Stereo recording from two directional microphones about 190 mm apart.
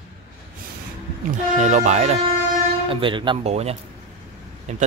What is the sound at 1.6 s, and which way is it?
A man's voice, 40° right (ahead or behind).